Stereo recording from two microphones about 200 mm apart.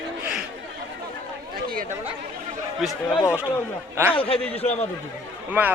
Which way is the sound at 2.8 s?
Centre (ahead or behind).